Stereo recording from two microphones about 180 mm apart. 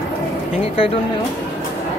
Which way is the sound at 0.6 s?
30° left (ahead or behind).